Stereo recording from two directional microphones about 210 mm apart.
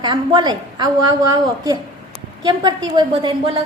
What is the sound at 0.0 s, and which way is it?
Speech, 20° right (ahead or behind).